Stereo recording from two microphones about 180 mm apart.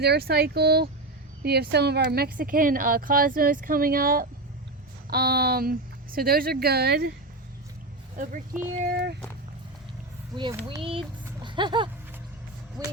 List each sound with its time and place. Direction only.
0.0 s speech: 60° right (ahead or behind)
8.1 s speech: 45° right (ahead or behind)
8.9 s speech: 60° right (ahead or behind)
11.4 s speech: 25° right (ahead or behind)
12.8 s a sound: 20° right (ahead or behind)